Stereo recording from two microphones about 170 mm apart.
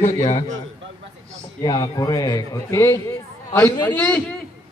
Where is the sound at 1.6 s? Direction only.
25° left (ahead or behind).